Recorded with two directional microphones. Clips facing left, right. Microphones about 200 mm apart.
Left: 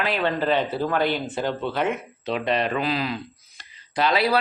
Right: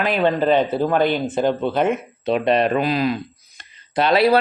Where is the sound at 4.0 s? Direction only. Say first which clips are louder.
Right 5 dB; 60° right (ahead or behind).